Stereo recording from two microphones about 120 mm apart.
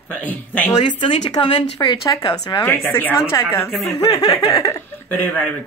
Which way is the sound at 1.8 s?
30° left (ahead or behind).